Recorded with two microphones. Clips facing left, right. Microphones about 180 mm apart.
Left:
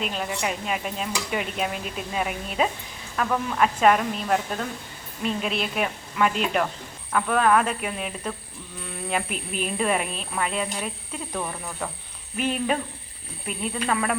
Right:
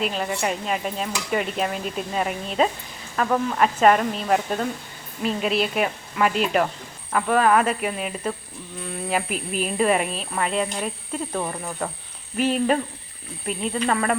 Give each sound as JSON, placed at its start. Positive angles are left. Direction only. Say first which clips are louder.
{"t": 0.0, "sound": "speech", "louder": "right 3 dB", "side_deg": 0}
{"t": 11.3, "sound": "speech", "louder": "right 1 dB", "side_deg": -15}
{"t": 12.4, "sound": "speech", "louder": "right 4 dB", "side_deg": 0}